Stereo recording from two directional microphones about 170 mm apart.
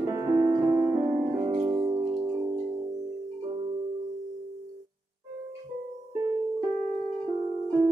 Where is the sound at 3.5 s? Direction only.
30° right (ahead or behind).